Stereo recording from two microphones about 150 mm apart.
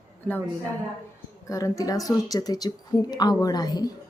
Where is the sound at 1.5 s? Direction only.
20° left (ahead or behind).